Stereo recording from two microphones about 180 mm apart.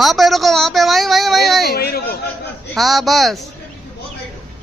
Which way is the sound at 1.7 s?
60° left (ahead or behind).